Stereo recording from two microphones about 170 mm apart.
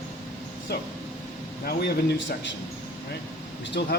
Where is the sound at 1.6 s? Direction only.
75° left (ahead or behind).